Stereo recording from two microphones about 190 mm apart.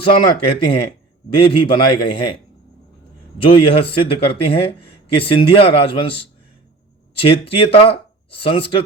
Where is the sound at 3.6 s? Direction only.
30° left (ahead or behind).